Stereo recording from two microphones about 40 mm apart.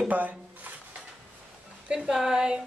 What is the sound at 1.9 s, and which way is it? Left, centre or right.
Speech, centre.